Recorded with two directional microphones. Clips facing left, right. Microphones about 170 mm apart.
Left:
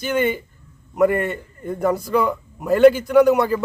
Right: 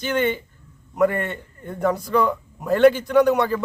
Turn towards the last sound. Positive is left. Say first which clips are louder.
# left 3 dB
turn(degrees=10)  # may be behind; listen again after turning